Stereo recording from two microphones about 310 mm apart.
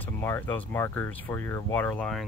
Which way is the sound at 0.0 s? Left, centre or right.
Centre.